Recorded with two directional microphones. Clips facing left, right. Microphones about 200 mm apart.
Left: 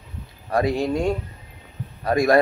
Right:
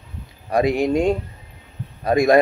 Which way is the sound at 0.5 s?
15° right (ahead or behind).